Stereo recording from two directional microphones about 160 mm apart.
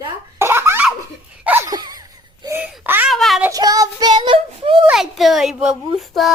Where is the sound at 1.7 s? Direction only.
25° right (ahead or behind).